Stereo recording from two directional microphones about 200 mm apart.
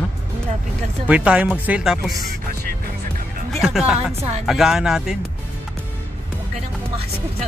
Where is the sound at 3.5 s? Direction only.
Centre (ahead or behind).